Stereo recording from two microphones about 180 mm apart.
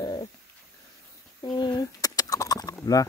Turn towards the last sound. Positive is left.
turn(degrees=20)  # may be behind; listen again after turning